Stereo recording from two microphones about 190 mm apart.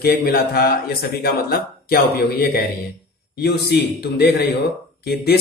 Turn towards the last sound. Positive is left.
turn(degrees=55)  # may be behind; listen again after turning